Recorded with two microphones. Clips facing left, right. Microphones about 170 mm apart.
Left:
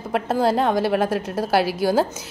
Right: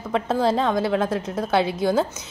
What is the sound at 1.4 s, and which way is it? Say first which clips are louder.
Speech: left 1 dB; 5° left (ahead or behind).